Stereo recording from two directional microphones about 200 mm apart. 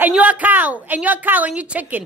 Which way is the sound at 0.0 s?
5° right (ahead or behind).